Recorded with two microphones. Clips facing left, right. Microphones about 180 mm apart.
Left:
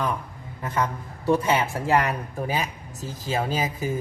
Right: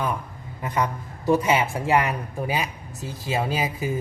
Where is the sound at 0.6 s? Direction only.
15° right (ahead or behind).